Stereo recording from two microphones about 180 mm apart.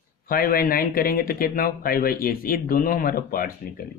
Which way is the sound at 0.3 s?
55° left (ahead or behind).